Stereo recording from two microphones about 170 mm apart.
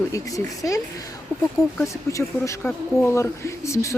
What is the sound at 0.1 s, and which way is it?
Speech, 20° left (ahead or behind).